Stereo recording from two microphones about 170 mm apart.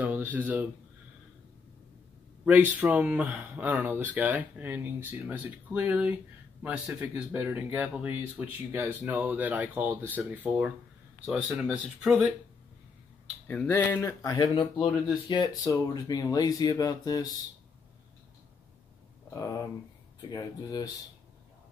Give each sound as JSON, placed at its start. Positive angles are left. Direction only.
{"t": 0.0, "sound": "speech", "side_deg": -10}
{"t": 2.4, "sound": "speech", "side_deg": -10}
{"t": 13.5, "sound": "speech", "side_deg": 10}
{"t": 19.3, "sound": "speech", "side_deg": 20}